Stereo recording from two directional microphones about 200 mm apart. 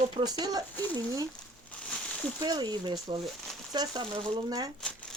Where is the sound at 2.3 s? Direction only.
20° right (ahead or behind).